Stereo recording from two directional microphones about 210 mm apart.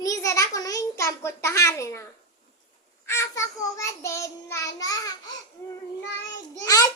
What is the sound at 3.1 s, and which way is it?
A child's voice, 15° left (ahead or behind).